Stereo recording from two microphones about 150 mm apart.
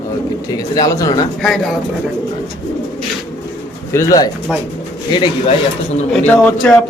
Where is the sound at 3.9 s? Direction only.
20° left (ahead or behind).